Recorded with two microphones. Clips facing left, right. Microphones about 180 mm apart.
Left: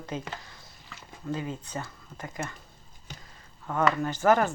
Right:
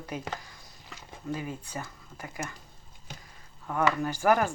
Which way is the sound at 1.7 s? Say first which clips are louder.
Left 2 dB; 10° right (ahead or behind).